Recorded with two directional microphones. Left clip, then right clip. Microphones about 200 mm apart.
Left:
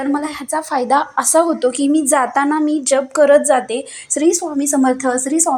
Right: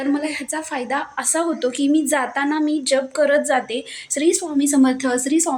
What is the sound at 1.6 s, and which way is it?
A woman's voice, 5° left (ahead or behind).